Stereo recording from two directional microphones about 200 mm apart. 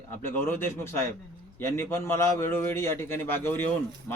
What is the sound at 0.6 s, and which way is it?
Speech, 10° left (ahead or behind).